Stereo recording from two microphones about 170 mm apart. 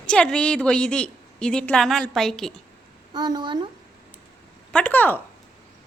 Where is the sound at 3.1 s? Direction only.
25° right (ahead or behind).